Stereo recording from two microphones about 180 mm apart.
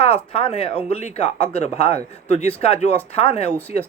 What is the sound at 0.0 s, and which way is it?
Speech, 30° left (ahead or behind).